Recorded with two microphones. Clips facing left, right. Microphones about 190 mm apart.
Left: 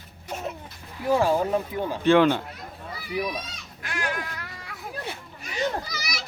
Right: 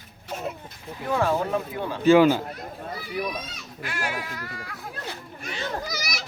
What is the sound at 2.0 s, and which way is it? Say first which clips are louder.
Speech: right 2 dB; 5° right (ahead or behind).